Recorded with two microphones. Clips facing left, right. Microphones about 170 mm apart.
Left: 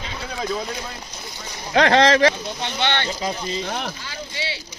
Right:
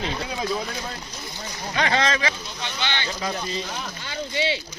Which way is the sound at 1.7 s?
75° left (ahead or behind).